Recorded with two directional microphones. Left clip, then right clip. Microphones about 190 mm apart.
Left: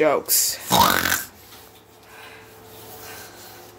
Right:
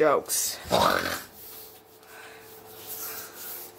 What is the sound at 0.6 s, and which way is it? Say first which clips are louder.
Speech: left 5 dB; 50° left (ahead or behind).